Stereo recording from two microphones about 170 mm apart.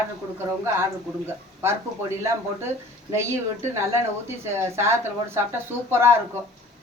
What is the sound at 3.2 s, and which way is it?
Speech, 15° right (ahead or behind).